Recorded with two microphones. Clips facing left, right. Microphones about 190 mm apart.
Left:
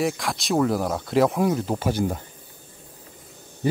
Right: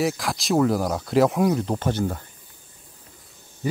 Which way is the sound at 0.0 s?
Centre (ahead or behind).